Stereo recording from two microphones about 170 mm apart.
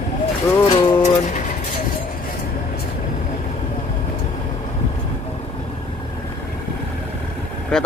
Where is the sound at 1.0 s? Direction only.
45° left (ahead or behind).